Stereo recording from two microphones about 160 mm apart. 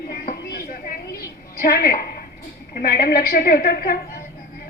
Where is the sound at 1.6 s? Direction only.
65° left (ahead or behind).